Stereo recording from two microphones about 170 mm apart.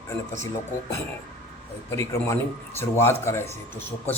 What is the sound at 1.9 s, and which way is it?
A man's voice, 15° left (ahead or behind).